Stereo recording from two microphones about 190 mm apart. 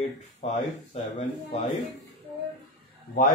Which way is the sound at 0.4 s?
30° left (ahead or behind).